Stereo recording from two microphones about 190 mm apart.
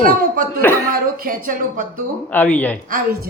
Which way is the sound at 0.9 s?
50° right (ahead or behind).